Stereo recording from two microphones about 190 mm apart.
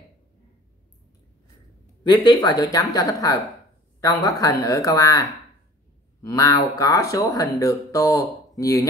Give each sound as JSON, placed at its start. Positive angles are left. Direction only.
{"t": 2.0, "sound": "speech", "side_deg": 20}
{"t": 6.2, "sound": "speech", "side_deg": 15}